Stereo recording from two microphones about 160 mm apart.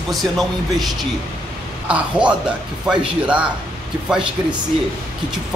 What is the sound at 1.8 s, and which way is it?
Speech, 10° right (ahead or behind).